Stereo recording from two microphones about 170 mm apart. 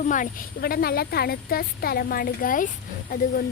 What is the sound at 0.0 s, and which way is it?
A woman's voice, 50° left (ahead or behind).